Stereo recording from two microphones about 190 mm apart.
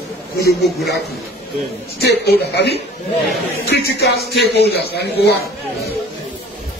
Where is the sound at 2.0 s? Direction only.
60° left (ahead or behind).